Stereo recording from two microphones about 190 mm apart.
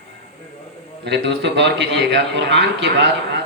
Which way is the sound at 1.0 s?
65° right (ahead or behind).